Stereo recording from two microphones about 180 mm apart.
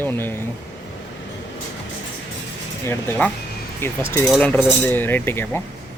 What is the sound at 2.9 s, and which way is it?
Cutlery, 10° left (ahead or behind).